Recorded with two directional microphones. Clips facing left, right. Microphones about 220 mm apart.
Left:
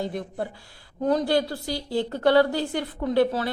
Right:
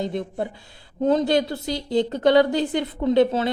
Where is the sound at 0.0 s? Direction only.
20° right (ahead or behind).